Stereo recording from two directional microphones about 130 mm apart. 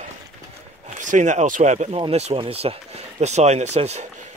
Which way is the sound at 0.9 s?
75° right (ahead or behind).